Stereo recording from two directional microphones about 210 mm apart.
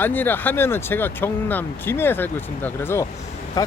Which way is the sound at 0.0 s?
10° left (ahead or behind).